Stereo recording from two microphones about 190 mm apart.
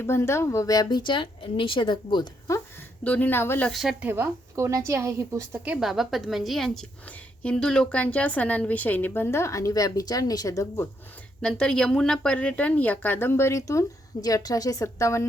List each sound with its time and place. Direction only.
0.0 s speech: 15° left (ahead or behind)
3.0 s speech: 10° left (ahead or behind)
3.7 s a woman's voice: centre (ahead or behind); by 10.8 s 15° left (ahead or behind)
11.4 s speech: 5° left (ahead or behind)